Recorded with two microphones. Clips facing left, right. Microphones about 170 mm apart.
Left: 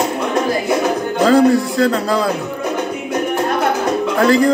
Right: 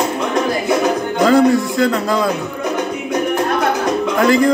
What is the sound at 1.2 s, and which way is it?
Speech, 35° left (ahead or behind).